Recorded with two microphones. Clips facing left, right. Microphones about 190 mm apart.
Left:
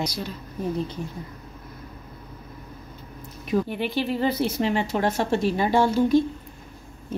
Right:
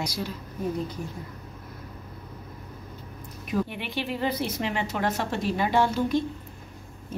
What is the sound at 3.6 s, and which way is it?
A woman's voice, 35° left (ahead or behind).